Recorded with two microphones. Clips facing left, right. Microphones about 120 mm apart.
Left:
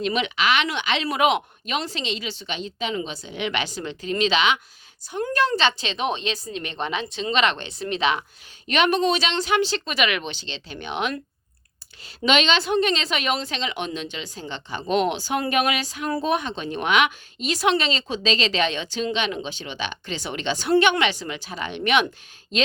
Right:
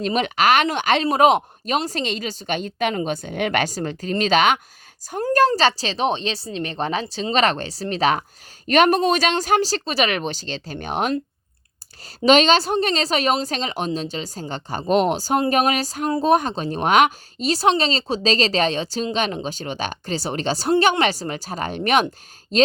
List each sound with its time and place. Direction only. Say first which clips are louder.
0.0 s a woman's voice: right 4 dB; 40° right (ahead or behind)